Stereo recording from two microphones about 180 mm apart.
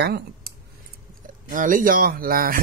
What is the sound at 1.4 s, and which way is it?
Speech, 45° right (ahead or behind).